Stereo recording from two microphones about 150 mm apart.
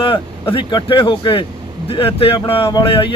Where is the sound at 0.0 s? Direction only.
35° left (ahead or behind).